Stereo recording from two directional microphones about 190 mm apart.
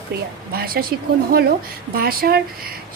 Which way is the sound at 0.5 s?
50° right (ahead or behind).